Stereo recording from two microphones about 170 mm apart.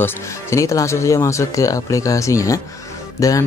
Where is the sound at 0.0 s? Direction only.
15° left (ahead or behind).